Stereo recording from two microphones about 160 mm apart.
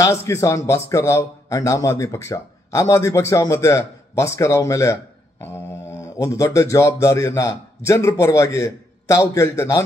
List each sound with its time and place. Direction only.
0.0 s a man's voice: 15° left (ahead or behind)